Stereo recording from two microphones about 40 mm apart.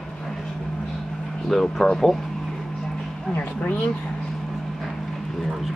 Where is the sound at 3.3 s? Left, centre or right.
Left.